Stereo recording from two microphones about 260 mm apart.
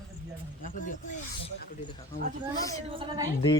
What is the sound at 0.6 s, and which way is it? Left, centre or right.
Speech, left.